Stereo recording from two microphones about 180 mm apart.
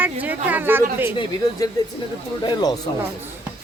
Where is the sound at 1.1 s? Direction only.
25° left (ahead or behind).